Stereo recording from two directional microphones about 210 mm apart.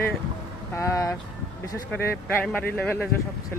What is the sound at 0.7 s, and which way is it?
Speech, 15° left (ahead or behind).